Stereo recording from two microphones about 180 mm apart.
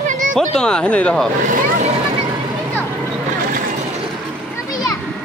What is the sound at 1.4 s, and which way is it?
Vehicle, 45° right (ahead or behind).